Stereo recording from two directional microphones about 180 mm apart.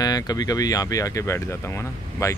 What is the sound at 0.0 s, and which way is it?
Speech, 20° left (ahead or behind).